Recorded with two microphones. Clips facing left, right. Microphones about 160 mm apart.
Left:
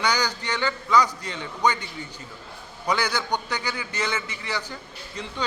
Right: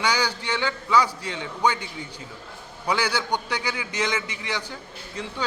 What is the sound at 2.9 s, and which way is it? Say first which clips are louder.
A man's voice: even; 10° right (ahead or behind).